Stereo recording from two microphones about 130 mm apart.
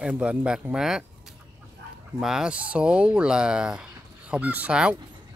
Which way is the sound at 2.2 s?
5° right (ahead or behind).